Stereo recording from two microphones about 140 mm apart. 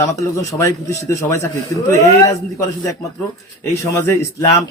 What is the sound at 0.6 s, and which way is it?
Speech, 20° left (ahead or behind).